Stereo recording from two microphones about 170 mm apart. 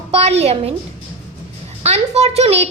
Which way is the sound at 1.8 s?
40° right (ahead or behind).